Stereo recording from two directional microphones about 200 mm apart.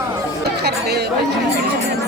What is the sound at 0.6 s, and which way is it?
Chatter, 55° right (ahead or behind).